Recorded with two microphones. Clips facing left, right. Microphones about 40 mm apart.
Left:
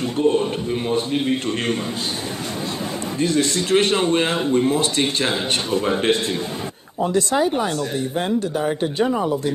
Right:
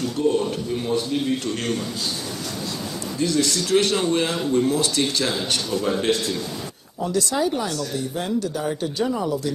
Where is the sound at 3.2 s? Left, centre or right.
Left.